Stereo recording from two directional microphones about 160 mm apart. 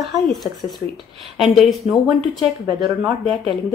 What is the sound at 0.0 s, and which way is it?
Speech, centre (ahead or behind).